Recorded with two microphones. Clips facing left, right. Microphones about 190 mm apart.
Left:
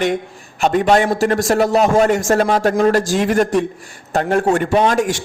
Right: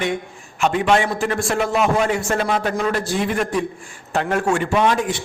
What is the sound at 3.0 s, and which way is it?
Speech, 90° left.